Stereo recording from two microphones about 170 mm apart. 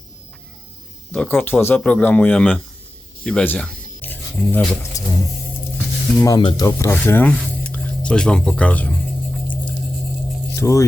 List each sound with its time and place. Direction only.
1.1 s speech: 10° left (ahead or behind)
5.7 s sizzle: 15° left (ahead or behind)
6.6 s a sound: 15° left (ahead or behind)
10.5 s speech: 15° left (ahead or behind)